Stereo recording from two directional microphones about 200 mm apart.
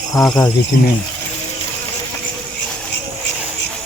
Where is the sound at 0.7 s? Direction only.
45° left (ahead or behind).